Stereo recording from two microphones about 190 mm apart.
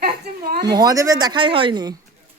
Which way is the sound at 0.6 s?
20° right (ahead or behind).